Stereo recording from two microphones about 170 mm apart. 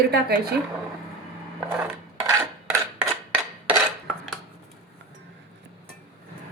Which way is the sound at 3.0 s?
5° right (ahead or behind).